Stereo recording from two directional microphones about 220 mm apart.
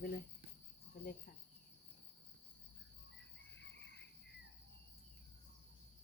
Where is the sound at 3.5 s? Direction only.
55° left (ahead or behind).